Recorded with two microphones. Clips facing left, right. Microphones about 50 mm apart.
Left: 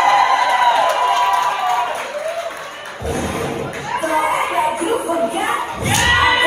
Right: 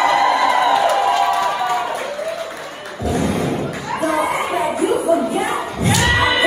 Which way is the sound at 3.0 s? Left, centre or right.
Left.